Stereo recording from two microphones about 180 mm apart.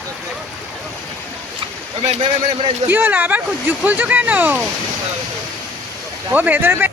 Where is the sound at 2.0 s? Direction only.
35° right (ahead or behind).